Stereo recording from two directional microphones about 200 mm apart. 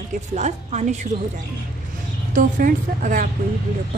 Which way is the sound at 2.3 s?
40° right (ahead or behind).